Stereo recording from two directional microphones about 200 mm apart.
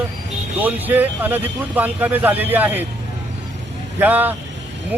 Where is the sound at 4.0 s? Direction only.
10° right (ahead or behind).